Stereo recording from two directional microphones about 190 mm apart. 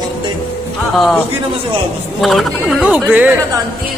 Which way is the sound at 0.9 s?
Centre (ahead or behind).